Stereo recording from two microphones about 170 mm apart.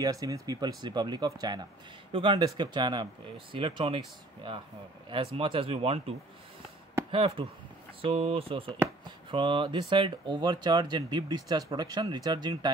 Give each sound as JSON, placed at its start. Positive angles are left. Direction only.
{"t": 0.0, "sound": "speech", "side_deg": -20}
{"t": 5.1, "sound": "speech", "side_deg": -35}